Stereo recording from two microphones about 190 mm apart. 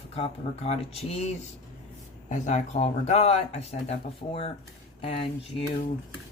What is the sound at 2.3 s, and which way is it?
Speech, 40° left (ahead or behind).